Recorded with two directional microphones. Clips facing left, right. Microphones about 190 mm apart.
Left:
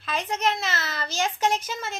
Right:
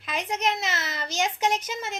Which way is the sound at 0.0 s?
15° right (ahead or behind).